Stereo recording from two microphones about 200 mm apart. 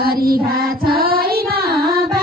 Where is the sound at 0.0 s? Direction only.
50° right (ahead or behind).